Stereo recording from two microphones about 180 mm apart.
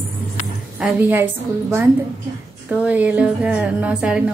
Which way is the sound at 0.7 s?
5° right (ahead or behind).